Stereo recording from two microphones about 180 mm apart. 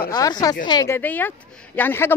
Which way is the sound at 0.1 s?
20° left (ahead or behind).